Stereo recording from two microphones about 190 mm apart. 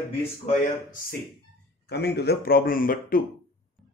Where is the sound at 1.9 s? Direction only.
60° left (ahead or behind).